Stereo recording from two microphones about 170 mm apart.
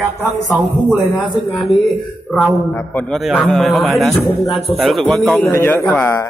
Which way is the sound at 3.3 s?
5° left (ahead or behind).